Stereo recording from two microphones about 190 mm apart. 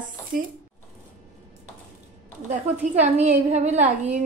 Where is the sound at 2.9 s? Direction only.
35° right (ahead or behind).